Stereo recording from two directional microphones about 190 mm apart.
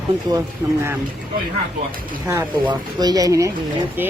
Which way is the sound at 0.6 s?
20° right (ahead or behind).